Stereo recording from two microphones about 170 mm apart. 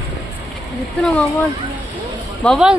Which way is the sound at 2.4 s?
5° left (ahead or behind).